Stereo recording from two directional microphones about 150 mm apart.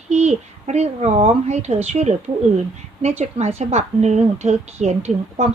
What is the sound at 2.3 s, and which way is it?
Speech, 30° right (ahead or behind).